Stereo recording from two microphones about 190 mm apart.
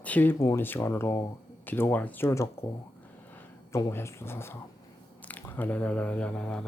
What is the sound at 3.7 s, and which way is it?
Speech, 15° left (ahead or behind).